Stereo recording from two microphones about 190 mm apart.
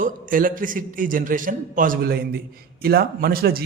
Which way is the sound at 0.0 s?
45° right (ahead or behind).